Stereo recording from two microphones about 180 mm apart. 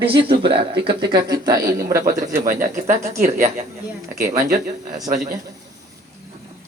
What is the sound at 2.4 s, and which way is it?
Speech, 50° right (ahead or behind).